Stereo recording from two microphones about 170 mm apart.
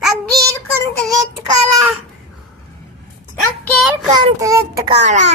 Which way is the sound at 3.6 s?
Centre (ahead or behind).